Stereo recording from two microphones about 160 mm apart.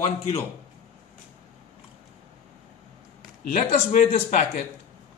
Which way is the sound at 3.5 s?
55° left (ahead or behind).